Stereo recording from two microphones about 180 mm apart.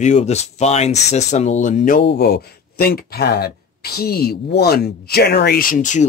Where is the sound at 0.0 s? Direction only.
40° left (ahead or behind).